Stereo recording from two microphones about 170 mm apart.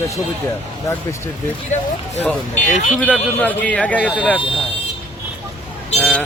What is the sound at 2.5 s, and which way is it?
Speech, 45° left (ahead or behind).